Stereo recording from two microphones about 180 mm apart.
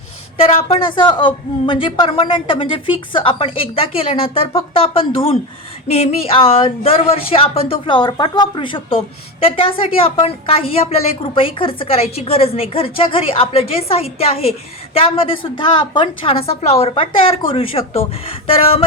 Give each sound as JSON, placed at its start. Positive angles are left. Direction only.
{"t": 0.4, "sound": "a woman's voice", "side_deg": 30}